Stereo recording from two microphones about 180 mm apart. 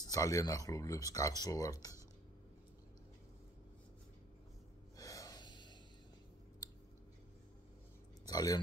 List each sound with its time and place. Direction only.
0.0 s speech: 20° left (ahead or behind)
4.9 s gasp: 20° left (ahead or behind)
8.3 s speech: 20° left (ahead or behind)